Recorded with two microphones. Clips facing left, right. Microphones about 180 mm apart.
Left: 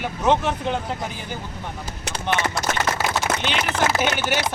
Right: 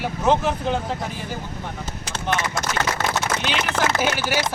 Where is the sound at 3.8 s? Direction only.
50° right (ahead or behind).